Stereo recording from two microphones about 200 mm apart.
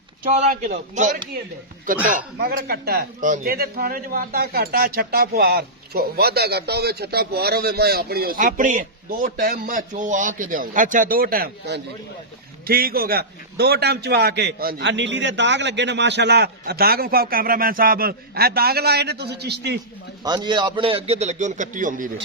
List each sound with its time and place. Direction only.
0.2 s a man's voice: 35° right (ahead or behind); by 19.8 s 55° right (ahead or behind)
20.2 s a man's voice: 20° right (ahead or behind); by 22.1 s 40° right (ahead or behind)